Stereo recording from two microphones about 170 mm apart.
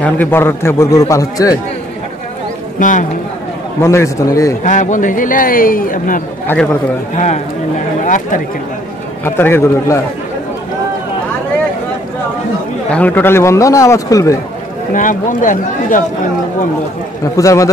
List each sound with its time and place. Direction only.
0.0 s a man's voice: 10° left (ahead or behind)
2.8 s a man's voice: 50° left (ahead or behind)
3.8 s a man's voice: 15° left (ahead or behind)
4.6 s a man's voice: 45° left (ahead or behind)
6.4 s a man's voice: 10° left (ahead or behind)
7.2 s a man's voice: 45° left (ahead or behind)
9.2 s a man's voice: 15° left (ahead or behind)
12.9 s a man's voice: 10° left (ahead or behind)
15.0 s a man's voice: 50° left (ahead or behind)
17.4 s a man's voice: 20° left (ahead or behind)